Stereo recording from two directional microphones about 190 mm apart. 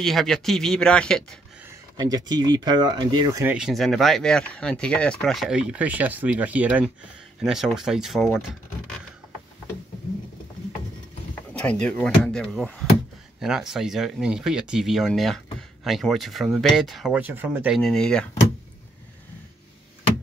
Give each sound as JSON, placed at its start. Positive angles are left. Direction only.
{"t": 0.0, "sound": "speech", "side_deg": 0}
{"t": 2.0, "sound": "speech", "side_deg": -20}
{"t": 3.5, "sound": "speech", "side_deg": 0}
{"t": 11.3, "sound": "speech", "side_deg": 5}
{"t": 17.7, "sound": "speech", "side_deg": 0}